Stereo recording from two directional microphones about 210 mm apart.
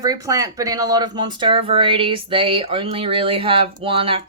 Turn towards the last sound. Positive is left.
turn(degrees=-25)  # may be behind; listen again after turning